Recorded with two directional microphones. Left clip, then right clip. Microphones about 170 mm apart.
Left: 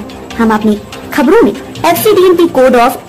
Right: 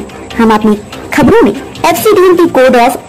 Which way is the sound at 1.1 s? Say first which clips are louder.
Right 1 dB; 20° right (ahead or behind).